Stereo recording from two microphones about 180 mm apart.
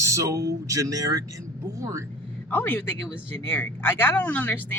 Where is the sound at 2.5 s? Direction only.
10° left (ahead or behind).